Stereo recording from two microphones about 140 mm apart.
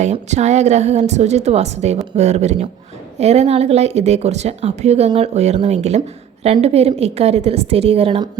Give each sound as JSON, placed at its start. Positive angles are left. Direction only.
{"t": 0.0, "sound": "speech", "side_deg": -55}